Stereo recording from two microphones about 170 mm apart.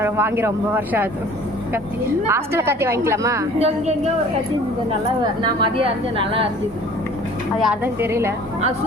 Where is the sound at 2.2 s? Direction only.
15° right (ahead or behind).